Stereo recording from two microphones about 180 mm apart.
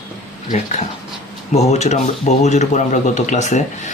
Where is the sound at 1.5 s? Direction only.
40° left (ahead or behind).